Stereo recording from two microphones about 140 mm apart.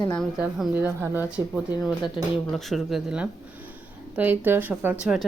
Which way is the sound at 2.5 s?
Centre (ahead or behind).